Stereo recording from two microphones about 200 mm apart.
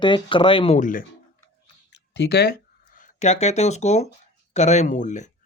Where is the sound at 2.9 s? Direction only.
35° left (ahead or behind).